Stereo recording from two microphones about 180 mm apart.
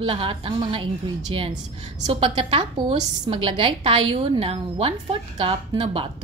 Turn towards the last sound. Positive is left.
turn(degrees=-30)  # may be behind; listen again after turning